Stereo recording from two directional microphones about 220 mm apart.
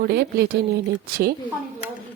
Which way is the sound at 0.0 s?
45° right (ahead or behind).